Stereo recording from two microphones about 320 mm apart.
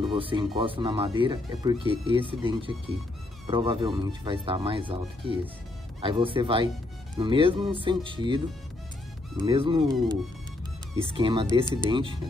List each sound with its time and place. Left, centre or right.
0.0 s speech: centre
9.4 s speech: centre